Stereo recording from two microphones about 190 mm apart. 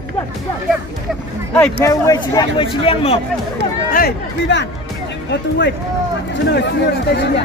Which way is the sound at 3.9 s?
60° left (ahead or behind).